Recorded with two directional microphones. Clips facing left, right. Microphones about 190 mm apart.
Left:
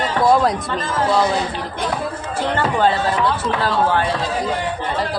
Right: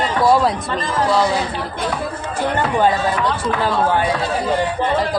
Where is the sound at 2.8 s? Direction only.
15° right (ahead or behind).